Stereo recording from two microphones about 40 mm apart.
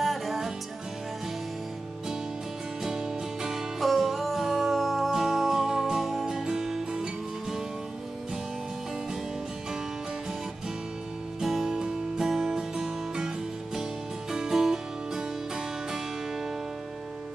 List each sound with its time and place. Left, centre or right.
0.0 s music: centre
3.4 s music: centre
11.4 s music: centre
14.3 s music: centre